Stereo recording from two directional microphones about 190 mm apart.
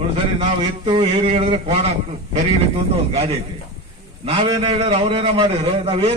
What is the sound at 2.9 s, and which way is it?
A man's voice, 30° right (ahead or behind).